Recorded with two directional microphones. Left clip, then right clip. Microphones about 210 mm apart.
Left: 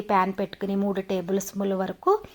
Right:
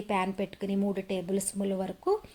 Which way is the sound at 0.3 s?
5° left (ahead or behind).